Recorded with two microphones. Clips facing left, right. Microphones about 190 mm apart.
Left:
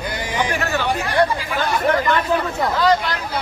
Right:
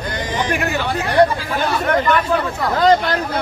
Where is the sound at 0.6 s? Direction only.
15° right (ahead or behind).